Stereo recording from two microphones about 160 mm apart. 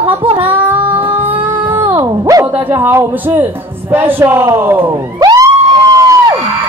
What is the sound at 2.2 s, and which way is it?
A man's voice, 15° right (ahead or behind).